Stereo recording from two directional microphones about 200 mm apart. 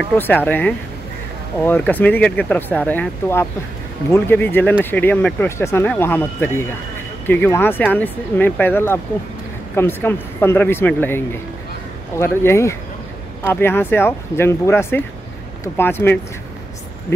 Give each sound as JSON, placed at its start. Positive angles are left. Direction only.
{"t": 0.5, "sound": "speech", "side_deg": 10}